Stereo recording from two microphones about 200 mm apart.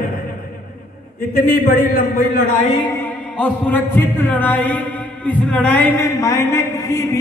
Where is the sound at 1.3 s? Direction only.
45° left (ahead or behind).